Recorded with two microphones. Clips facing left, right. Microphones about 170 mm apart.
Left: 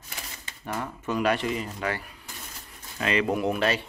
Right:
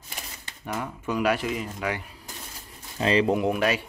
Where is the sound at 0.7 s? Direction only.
10° right (ahead or behind).